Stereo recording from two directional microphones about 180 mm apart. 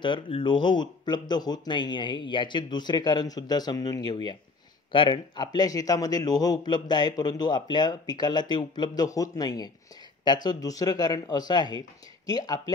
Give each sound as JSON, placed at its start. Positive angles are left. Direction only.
{"t": 0.0, "sound": "speech", "side_deg": 25}